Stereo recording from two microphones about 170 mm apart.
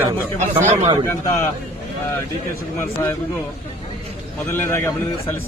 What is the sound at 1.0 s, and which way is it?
Speech, 15° left (ahead or behind).